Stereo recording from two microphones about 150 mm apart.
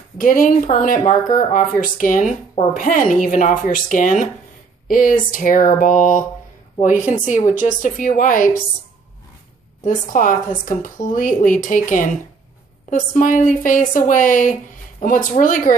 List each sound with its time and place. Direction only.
0.2 s speech: 65° left (ahead or behind)
9.8 s speech: 65° left (ahead or behind)